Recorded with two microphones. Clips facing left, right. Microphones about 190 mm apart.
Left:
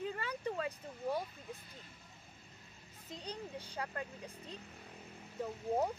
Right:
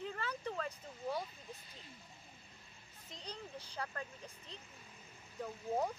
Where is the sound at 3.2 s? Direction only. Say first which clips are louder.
Left 3 dB; 10° left (ahead or behind).